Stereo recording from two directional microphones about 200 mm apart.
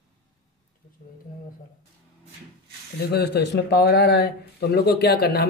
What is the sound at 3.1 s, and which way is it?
Speech, 55° left (ahead or behind).